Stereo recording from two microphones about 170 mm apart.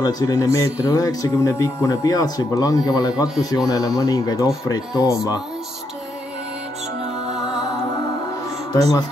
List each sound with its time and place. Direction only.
0.0 s speech: 25° left (ahead or behind)